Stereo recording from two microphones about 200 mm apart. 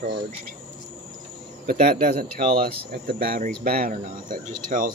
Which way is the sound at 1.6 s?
50° right (ahead or behind).